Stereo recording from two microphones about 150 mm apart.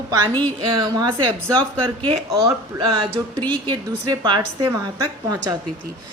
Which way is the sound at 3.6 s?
30° right (ahead or behind).